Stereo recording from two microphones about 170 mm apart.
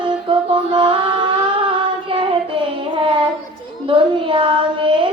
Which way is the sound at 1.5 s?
30° right (ahead or behind).